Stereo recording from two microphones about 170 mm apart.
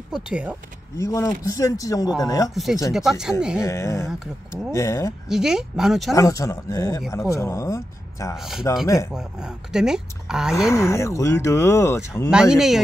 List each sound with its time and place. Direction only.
0.1 s speech: 5° right (ahead or behind)
0.9 s speech: 15° left (ahead or behind)
2.5 s speech: centre (ahead or behind)
3.6 s speech: 15° left (ahead or behind)
5.3 s speech: 5° right (ahead or behind)
6.1 s speech: 20° left (ahead or behind)
8.4 s speech: centre (ahead or behind)
10.7 s speech: 15° left (ahead or behind)
12.3 s speech: 5° right (ahead or behind)